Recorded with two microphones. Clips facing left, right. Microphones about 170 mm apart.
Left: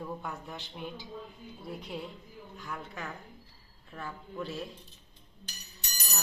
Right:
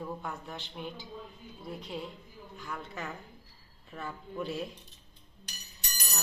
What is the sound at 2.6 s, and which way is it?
A woman's voice, centre (ahead or behind).